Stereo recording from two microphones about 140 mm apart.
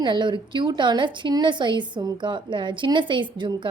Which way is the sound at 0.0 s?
35° right (ahead or behind).